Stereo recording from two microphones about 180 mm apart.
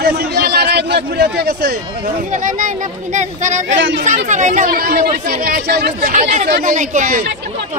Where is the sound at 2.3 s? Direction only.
45° right (ahead or behind).